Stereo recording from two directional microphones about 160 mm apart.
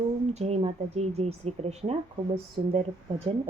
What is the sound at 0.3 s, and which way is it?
Speech, 40° right (ahead or behind).